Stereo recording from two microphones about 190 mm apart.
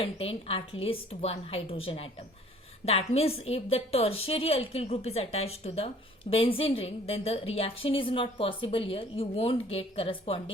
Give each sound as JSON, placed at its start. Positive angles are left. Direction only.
{"t": 0.0, "sound": "a woman's voice", "side_deg": 30}